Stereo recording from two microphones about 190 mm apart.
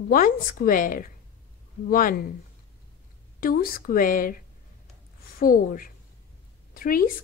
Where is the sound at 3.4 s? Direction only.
50° left (ahead or behind).